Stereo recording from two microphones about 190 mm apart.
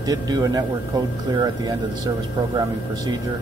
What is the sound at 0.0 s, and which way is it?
Speech, 20° right (ahead or behind).